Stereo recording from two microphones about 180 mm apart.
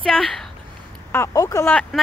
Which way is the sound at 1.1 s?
15° left (ahead or behind).